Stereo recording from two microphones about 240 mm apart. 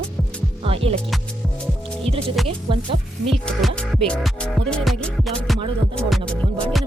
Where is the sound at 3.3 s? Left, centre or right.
Centre.